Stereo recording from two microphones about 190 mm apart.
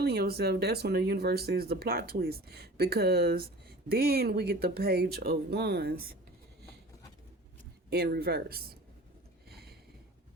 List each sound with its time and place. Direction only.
0.0 s speech: 55° right (ahead or behind)
7.9 s speech: 55° right (ahead or behind)
9.5 s a sound: 55° right (ahead or behind)